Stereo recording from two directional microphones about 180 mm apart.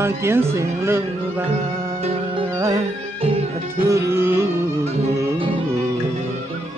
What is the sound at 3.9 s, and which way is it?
Speech, 15° right (ahead or behind).